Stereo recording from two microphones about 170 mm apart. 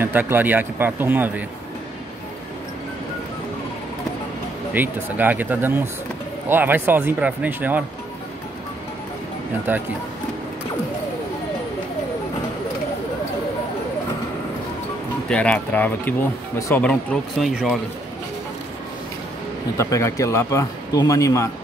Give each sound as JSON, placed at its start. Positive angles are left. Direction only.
{"t": 0.0, "sound": "speech", "side_deg": -10}
{"t": 4.7, "sound": "speech", "side_deg": -10}
{"t": 9.7, "sound": "speech", "side_deg": -10}
{"t": 15.2, "sound": "speech", "side_deg": 5}
{"t": 16.8, "sound": "speech", "side_deg": 0}
{"t": 19.8, "sound": "speech", "side_deg": 15}